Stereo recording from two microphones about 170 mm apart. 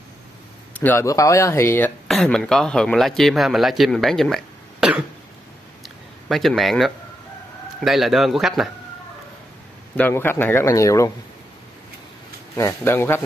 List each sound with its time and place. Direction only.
0.7 s a man's voice: 10° left (ahead or behind)
2.0 s speech: centre (ahead or behind)
6.2 s speech: centre (ahead or behind)
9.9 s a man's voice: 10° left (ahead or behind)
12.5 s a man's voice: 15° left (ahead or behind)